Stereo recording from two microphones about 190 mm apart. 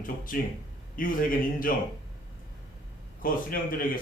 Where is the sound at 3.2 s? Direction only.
45° left (ahead or behind).